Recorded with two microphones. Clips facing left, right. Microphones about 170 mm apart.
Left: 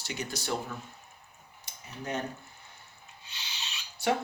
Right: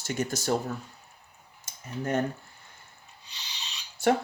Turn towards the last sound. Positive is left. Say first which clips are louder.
# right 5 dB
turn(degrees=-50)  # may be behind; listen again after turning